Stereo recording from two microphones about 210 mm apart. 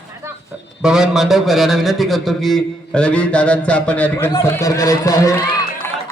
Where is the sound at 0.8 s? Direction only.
5° right (ahead or behind); by 5.3 s 15° left (ahead or behind).